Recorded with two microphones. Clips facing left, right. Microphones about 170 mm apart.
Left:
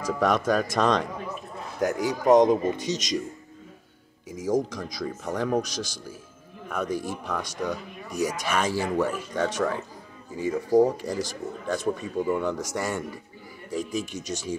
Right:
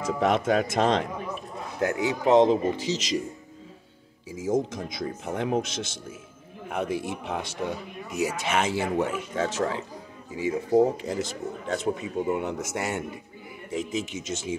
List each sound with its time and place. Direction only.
0.0 s speech: 25° right (ahead or behind)
2.3 s speech: 25° right (ahead or behind)
4.4 s a man's voice: 25° right (ahead or behind)